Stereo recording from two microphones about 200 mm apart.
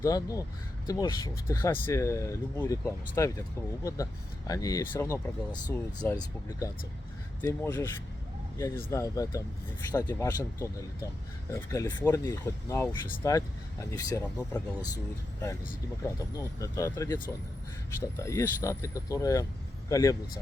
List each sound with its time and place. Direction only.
0.0 s speech: 15° left (ahead or behind)
7.4 s speech: 15° left (ahead or behind)
16.0 s speech: 15° left (ahead or behind)